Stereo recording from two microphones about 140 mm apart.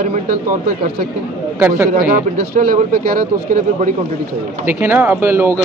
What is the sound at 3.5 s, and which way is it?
Speech, 65° right (ahead or behind).